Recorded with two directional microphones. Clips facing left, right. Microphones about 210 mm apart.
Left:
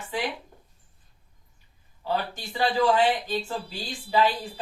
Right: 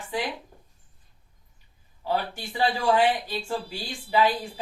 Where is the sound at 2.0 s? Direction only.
10° right (ahead or behind).